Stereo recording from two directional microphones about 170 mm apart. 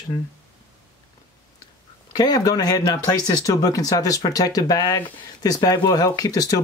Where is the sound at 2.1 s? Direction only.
25° left (ahead or behind).